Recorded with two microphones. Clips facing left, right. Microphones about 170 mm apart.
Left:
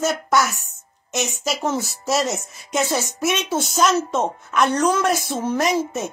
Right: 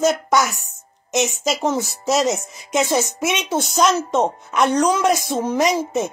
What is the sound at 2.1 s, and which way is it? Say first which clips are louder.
Speech: right 3 dB; 15° right (ahead or behind).